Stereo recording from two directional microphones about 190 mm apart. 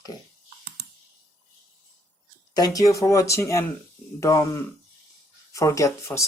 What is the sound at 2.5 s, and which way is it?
Speech, 20° left (ahead or behind).